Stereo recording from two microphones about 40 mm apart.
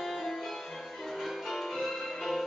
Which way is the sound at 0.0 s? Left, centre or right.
Centre.